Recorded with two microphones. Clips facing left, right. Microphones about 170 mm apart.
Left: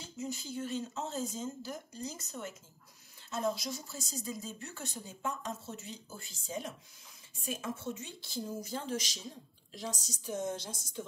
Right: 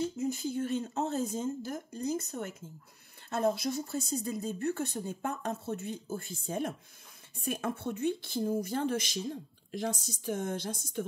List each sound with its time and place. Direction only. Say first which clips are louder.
0.0 s speech: right 9 dB; 55° right (ahead or behind)